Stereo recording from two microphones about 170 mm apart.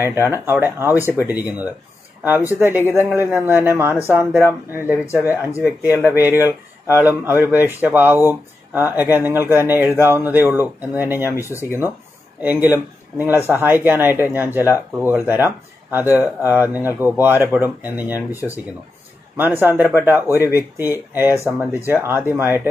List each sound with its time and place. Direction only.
0.0 s speech: 15° right (ahead or behind)
2.2 s speech: 10° right (ahead or behind)
4.9 s speech: 15° left (ahead or behind)
5.2 s speech: 10° right (ahead or behind)
11.3 s speech: 15° left (ahead or behind)
12.4 s speech: 10° right (ahead or behind)
18.3 s speech: 15° left (ahead or behind)
19.3 s speech: 10° right (ahead or behind)